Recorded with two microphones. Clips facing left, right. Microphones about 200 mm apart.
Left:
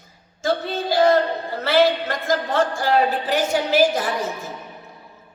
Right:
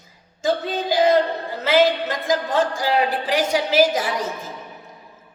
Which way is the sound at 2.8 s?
10° right (ahead or behind).